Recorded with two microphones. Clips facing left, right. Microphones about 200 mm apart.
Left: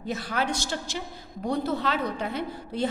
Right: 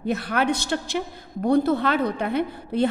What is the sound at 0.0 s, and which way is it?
A woman's voice, 60° right (ahead or behind).